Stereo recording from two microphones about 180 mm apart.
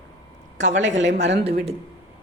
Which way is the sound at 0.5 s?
90° right.